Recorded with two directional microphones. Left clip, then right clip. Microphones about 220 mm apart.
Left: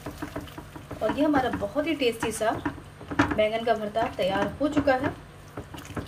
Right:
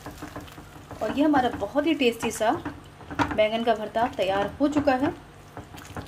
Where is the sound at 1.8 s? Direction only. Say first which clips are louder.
Right 3 dB; 50° right (ahead or behind).